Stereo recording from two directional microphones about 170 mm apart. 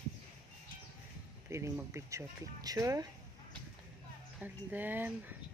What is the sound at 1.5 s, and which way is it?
Speech, 15° right (ahead or behind).